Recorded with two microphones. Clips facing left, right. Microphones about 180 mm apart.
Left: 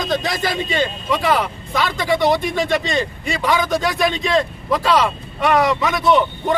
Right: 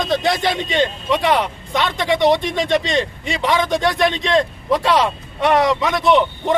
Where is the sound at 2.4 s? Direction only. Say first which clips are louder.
Even; 25° right (ahead or behind).